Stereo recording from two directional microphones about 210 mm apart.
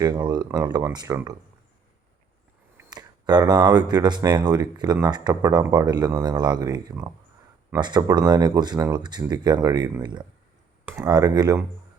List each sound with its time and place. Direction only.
0.0 s speech: 20° right (ahead or behind)
2.7 s speech: 20° right (ahead or behind)